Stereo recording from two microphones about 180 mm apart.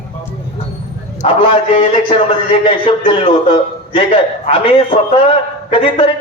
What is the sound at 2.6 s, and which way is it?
A man's voice, 30° left (ahead or behind).